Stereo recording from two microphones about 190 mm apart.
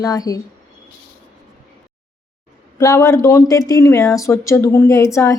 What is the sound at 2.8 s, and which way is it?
Speech, 15° left (ahead or behind).